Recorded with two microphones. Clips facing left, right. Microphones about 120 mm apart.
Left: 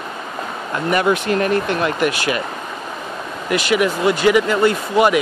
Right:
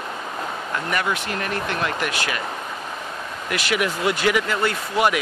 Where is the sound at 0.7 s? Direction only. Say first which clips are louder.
Left 8 dB; 20° left (ahead or behind).